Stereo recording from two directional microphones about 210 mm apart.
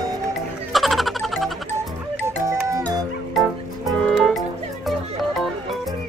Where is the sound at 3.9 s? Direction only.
Centre (ahead or behind).